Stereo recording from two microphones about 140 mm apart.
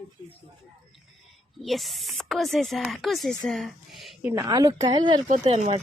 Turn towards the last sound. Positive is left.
turn(degrees=-50)  # may be behind; listen again after turning